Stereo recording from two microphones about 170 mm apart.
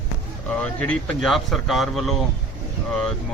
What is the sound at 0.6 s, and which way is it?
A man's voice, 5° left (ahead or behind).